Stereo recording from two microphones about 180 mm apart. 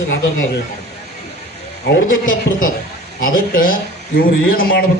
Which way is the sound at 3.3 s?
50° left (ahead or behind).